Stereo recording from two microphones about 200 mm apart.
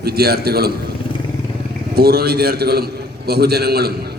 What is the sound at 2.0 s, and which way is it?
A man's voice, 50° right (ahead or behind).